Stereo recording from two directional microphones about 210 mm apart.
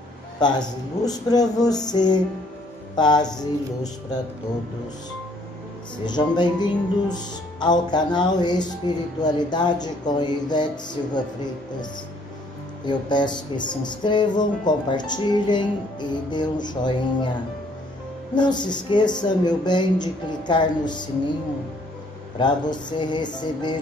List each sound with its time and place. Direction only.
0.4 s speech: 20° left (ahead or behind)
6.0 s speech: 20° left (ahead or behind)
12.8 s speech: 20° left (ahead or behind)
18.3 s speech: 20° left (ahead or behind)
22.4 s speech: 20° left (ahead or behind)